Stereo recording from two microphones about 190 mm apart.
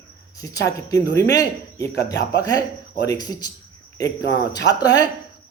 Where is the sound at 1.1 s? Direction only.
20° left (ahead or behind).